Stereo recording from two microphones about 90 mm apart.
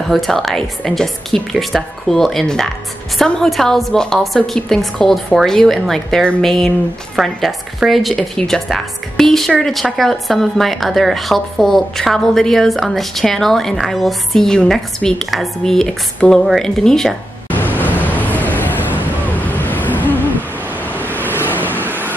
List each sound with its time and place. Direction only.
0.1 s a woman's voice: centre (ahead or behind)
17.5 s vehicle: 20° left (ahead or behind)
18.9 s a sound: 20° left (ahead or behind)
21.1 s vehicle: 20° left (ahead or behind)